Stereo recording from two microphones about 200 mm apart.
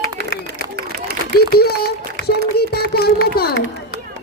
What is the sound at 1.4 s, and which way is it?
Run, 50° left (ahead or behind).